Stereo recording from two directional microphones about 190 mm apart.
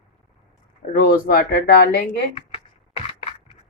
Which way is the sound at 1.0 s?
50° left (ahead or behind).